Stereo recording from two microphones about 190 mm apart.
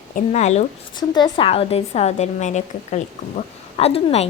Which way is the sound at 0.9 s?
25° left (ahead or behind).